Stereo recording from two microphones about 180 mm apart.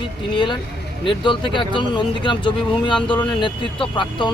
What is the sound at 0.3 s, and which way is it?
Speech, 25° left (ahead or behind).